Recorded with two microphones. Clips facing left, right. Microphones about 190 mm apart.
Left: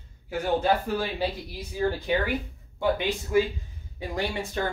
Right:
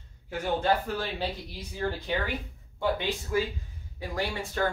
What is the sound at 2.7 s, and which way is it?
Speech, 15° left (ahead or behind).